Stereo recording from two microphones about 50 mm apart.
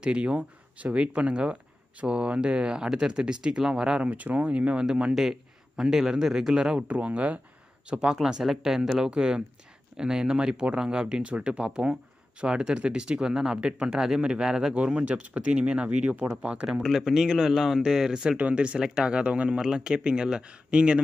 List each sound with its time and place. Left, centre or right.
0.0 s speech: right
4.0 s speech: right
5.1 s a man's voice: centre
6.9 s speech: right
7.9 s speech: centre
16.8 s speech: centre
18.4 s speech: right
19.6 s speech: centre